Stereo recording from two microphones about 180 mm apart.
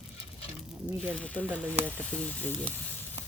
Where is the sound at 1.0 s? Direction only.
5° left (ahead or behind).